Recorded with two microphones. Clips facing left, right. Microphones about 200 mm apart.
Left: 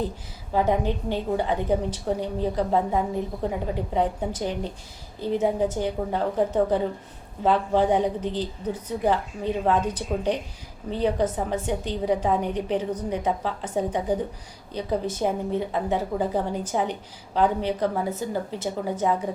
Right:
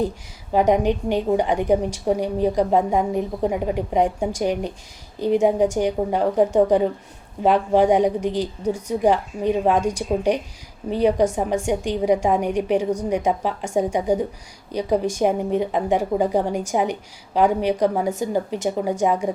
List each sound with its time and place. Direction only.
0.5 s a woman's voice: 15° right (ahead or behind)